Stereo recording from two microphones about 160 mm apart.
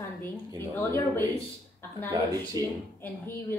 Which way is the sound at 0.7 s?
15° left (ahead or behind).